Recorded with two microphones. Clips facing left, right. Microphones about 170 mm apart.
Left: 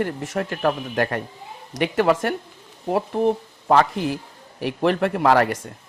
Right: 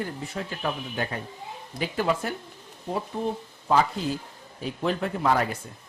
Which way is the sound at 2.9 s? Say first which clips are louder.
Left 8 dB; 70° left (ahead or behind).